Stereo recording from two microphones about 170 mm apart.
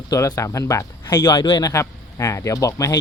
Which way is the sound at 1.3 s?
25° left (ahead or behind).